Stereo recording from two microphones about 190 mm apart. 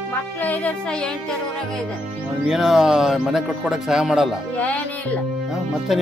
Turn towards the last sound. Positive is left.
turn(degrees=0)  # may be behind; listen again after turning